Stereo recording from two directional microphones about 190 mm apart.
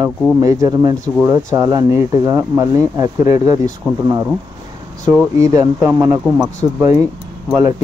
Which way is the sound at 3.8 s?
5° right (ahead or behind).